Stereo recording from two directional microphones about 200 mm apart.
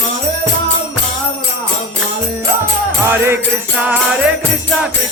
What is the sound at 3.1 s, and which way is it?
Music, 10° right (ahead or behind).